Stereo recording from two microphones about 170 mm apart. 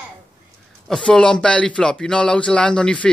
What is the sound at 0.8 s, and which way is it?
Speech, 5° left (ahead or behind).